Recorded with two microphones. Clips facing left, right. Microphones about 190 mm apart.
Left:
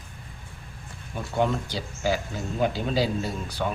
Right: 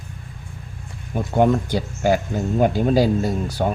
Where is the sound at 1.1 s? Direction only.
50° right (ahead or behind).